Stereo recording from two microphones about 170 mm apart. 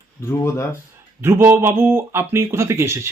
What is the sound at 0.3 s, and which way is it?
Speech, 15° left (ahead or behind).